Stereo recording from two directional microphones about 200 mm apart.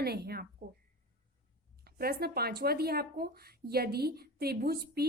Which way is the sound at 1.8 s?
50° right (ahead or behind).